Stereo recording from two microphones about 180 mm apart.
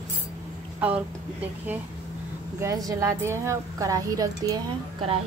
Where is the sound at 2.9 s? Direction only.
15° right (ahead or behind).